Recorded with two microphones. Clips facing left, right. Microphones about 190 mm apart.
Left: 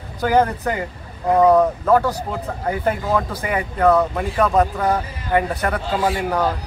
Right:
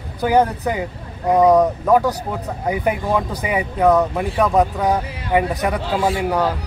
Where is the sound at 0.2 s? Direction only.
10° right (ahead or behind).